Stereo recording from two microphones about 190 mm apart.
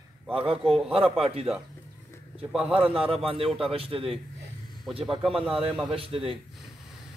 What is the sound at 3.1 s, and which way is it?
A man's voice, 30° right (ahead or behind).